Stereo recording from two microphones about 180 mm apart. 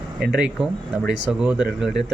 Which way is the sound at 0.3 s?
5° right (ahead or behind).